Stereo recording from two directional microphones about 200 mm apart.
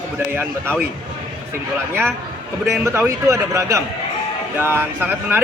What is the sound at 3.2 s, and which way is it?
Speech, 15° right (ahead or behind).